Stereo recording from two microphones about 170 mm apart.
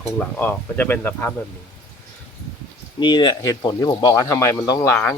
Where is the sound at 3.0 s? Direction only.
25° left (ahead or behind).